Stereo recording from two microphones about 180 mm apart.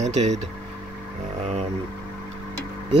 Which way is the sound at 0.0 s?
40° right (ahead or behind).